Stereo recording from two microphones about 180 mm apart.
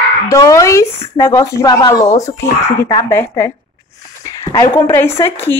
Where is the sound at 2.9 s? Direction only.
15° left (ahead or behind).